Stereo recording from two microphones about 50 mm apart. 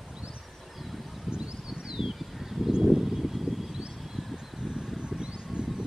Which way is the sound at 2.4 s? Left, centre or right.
Centre.